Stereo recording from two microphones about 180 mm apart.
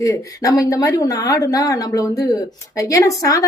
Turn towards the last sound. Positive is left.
turn(degrees=20)  # may be behind; listen again after turning